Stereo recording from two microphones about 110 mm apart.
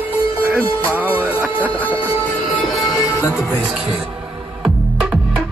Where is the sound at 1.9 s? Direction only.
50° left (ahead or behind).